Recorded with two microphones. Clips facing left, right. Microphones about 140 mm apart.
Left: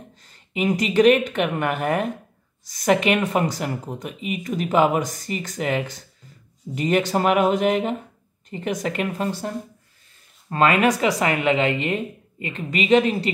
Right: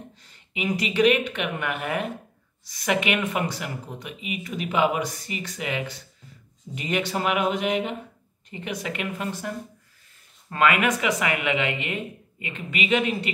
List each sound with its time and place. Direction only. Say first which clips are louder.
0.2 s speech: left 7 dB; 40° left (ahead or behind)
10.5 s speech: left 4 dB; 35° left (ahead or behind)